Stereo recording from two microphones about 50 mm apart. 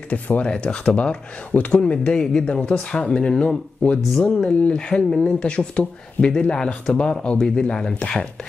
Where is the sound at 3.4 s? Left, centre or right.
Left.